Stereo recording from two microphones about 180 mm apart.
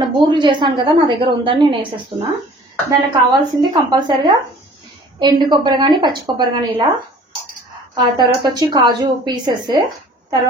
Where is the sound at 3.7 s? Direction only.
25° right (ahead or behind).